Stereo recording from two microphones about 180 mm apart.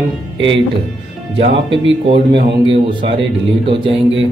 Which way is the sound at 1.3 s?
30° right (ahead or behind).